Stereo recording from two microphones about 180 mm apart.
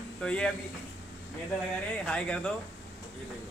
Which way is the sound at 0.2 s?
5° left (ahead or behind).